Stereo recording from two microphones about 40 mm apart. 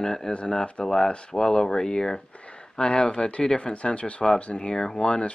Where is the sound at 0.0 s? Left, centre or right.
Centre.